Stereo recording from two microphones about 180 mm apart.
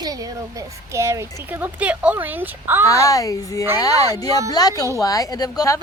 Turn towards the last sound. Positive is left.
turn(degrees=20)  # may be behind; listen again after turning